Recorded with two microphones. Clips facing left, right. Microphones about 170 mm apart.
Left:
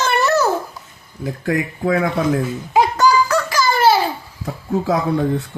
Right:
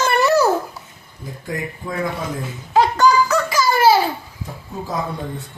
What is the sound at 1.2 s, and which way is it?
Speech, 75° left (ahead or behind).